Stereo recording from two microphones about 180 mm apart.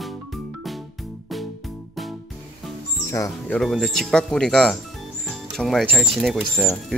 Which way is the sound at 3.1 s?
15° left (ahead or behind).